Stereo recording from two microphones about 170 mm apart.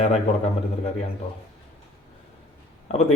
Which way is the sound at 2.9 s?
40° left (ahead or behind).